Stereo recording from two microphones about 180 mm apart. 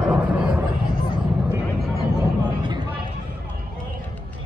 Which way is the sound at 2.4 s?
25° right (ahead or behind).